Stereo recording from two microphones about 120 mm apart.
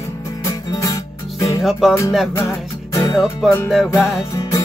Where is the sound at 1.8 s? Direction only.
5° right (ahead or behind).